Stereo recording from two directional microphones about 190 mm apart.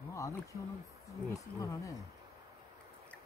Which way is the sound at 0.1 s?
15° left (ahead or behind).